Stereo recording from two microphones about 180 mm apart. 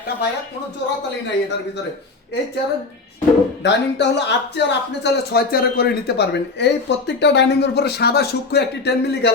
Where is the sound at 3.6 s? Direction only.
75° left (ahead or behind).